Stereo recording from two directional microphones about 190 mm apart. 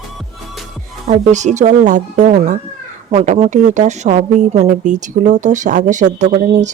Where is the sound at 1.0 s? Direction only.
40° right (ahead or behind).